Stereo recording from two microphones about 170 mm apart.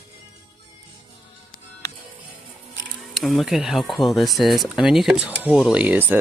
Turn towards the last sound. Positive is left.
turn(degrees=-10)  # may be behind; listen again after turning